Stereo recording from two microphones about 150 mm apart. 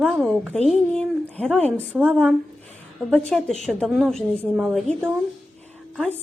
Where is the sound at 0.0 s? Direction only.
5° right (ahead or behind).